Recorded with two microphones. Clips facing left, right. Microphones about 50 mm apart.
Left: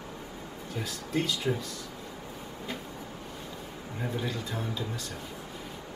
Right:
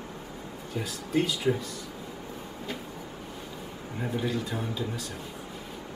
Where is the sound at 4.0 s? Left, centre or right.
Centre.